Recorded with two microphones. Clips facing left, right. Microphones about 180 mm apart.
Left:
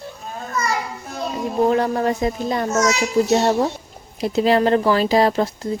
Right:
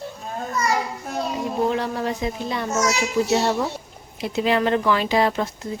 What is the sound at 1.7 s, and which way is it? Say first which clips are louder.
A child's voice: left 5 dB; 45° left (ahead or behind).